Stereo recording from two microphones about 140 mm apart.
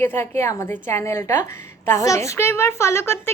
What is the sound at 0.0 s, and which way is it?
A woman's voice, 20° left (ahead or behind).